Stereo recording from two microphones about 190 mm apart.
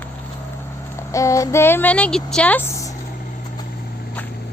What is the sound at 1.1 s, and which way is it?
Speech, 15° left (ahead or behind).